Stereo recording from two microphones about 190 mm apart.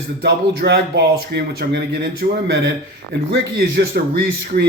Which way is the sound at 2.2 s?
50° right (ahead or behind).